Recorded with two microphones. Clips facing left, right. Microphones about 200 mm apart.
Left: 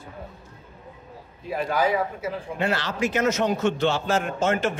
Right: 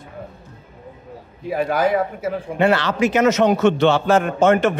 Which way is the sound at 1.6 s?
60° right (ahead or behind).